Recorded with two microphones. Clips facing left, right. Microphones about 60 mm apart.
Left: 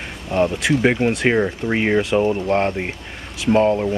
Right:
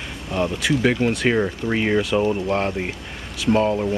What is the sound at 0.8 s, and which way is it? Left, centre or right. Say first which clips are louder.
Speech: left 2 dB; centre.